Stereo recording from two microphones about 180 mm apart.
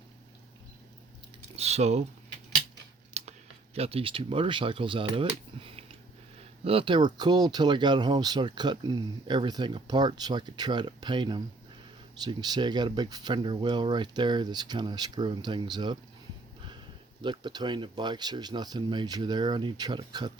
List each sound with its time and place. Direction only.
1.5 s speech: 35° right (ahead or behind)
3.2 s a sound: 40° right (ahead or behind)
3.8 s speech: 35° right (ahead or behind)
17.2 s speech: 25° right (ahead or behind)